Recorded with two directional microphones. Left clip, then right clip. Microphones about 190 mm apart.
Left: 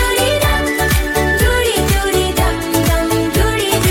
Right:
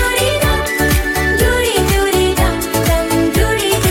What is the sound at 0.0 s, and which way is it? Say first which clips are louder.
Music: even; centre (ahead or behind).